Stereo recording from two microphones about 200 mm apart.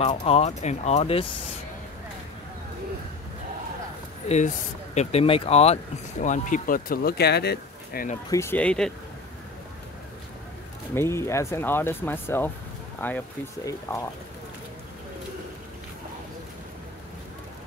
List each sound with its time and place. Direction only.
0.0 s speech: 30° left (ahead or behind)
4.9 s speech: 30° left (ahead or behind); by 8.2 s 45° left (ahead or behind)
8.3 s speech: 15° left (ahead or behind)
11.0 s speech: 15° left (ahead or behind)